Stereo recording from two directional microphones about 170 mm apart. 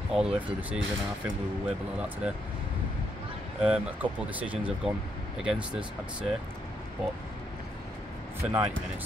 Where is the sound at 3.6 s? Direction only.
5° right (ahead or behind).